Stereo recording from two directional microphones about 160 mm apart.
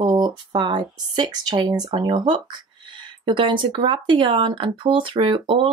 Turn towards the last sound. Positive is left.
turn(degrees=-35)  # may be behind; listen again after turning